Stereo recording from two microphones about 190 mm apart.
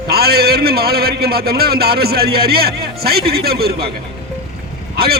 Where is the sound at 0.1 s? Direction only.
55° right (ahead or behind).